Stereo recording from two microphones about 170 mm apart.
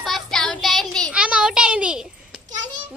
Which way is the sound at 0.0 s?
Centre (ahead or behind).